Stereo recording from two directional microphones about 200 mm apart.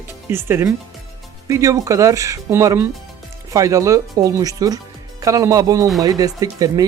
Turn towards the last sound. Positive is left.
turn(degrees=-20)  # may be behind; listen again after turning